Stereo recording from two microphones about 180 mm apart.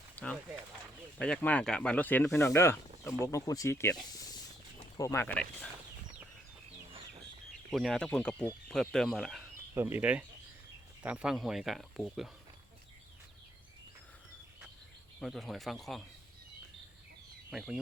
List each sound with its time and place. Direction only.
0.2 s speech: 10° left (ahead or behind)
4.9 s speech: 15° left (ahead or behind)
7.7 s speech: centre (ahead or behind)
9.7 s speech: 10° right (ahead or behind)
15.2 s speech: centre (ahead or behind)
17.5 s speech: 5° right (ahead or behind)